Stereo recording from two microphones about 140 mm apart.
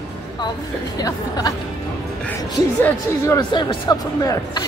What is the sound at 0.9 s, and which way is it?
Speech, 30° left (ahead or behind).